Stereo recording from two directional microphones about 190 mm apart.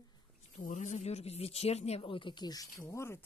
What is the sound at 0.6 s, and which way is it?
Speech, 40° left (ahead or behind).